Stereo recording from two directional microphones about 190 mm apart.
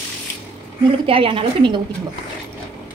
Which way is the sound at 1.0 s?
30° right (ahead or behind).